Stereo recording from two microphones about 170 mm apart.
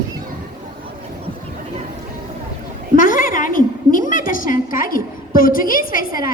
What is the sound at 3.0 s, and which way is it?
A woman's voice, 55° left (ahead or behind).